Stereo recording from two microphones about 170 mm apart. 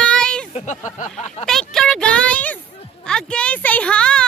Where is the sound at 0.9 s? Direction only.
45° left (ahead or behind).